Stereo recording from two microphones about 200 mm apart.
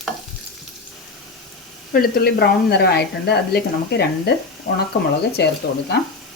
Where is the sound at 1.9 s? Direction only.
50° left (ahead or behind).